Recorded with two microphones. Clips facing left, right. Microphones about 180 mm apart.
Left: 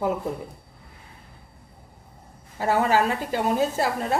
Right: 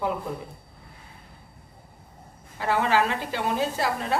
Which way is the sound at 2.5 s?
40° left (ahead or behind).